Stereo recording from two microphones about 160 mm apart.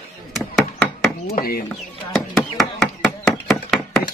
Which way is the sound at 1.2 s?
70° left (ahead or behind).